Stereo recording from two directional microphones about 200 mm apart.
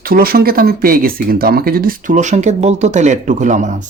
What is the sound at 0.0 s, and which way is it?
Speech, 45° right (ahead or behind).